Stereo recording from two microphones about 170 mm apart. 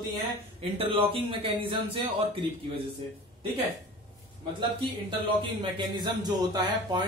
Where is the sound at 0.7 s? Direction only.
35° right (ahead or behind).